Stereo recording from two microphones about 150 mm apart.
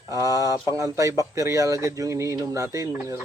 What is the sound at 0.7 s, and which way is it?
Speech, 20° right (ahead or behind).